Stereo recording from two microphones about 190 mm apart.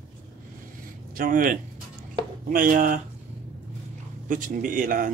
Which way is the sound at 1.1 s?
45° right (ahead or behind).